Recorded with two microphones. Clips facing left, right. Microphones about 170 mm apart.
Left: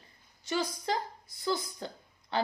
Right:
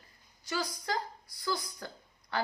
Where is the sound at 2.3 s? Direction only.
25° left (ahead or behind).